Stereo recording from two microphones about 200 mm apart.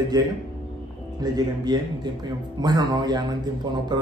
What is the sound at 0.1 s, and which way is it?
Speech, 20° right (ahead or behind).